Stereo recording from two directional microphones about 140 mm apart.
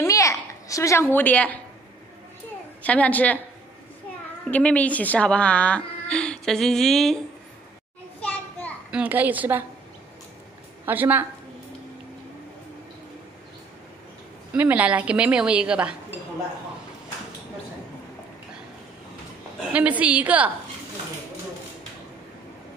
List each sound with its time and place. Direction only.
0.0 s a sound: 25° left (ahead or behind)
2.8 s a woman's voice: 10° left (ahead or behind)
4.5 s a woman's voice: 10° left (ahead or behind)
8.2 s children playing: 10° left (ahead or behind)
8.9 s a woman's voice: 10° right (ahead or behind)
10.9 s a woman's voice: 15° right (ahead or behind)
14.5 s a woman's voice: 10° right (ahead or behind)
19.7 s a woman's voice: 10° right (ahead or behind)